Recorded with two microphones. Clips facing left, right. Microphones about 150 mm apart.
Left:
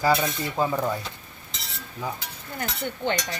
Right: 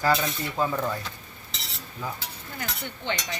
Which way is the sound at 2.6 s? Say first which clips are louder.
Left 6 dB; 45° left (ahead or behind).